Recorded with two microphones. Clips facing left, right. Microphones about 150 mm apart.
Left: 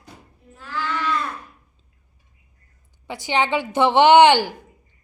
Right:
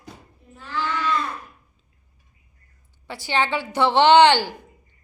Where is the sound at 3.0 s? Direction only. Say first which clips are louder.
Left 2 dB; 15° left (ahead or behind).